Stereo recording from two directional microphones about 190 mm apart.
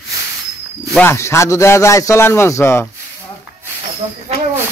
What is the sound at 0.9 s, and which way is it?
A man's voice, 15° left (ahead or behind).